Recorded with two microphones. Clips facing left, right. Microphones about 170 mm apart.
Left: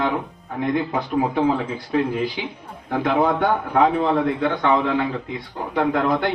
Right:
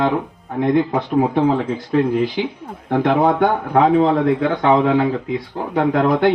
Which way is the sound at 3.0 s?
45° right (ahead or behind).